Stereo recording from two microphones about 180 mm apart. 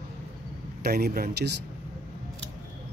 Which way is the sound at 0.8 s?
60° right (ahead or behind).